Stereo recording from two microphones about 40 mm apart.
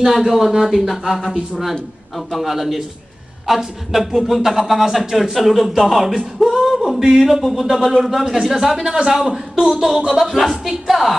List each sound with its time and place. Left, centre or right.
0.0 s a man's voice: centre
1.2 s a man's voice: centre
2.1 s a man's voice: centre